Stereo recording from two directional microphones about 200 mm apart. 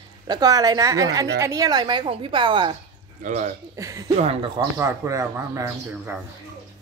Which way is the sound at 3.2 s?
35° right (ahead or behind).